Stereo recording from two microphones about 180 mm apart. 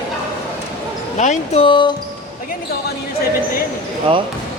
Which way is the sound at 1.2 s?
40° left (ahead or behind).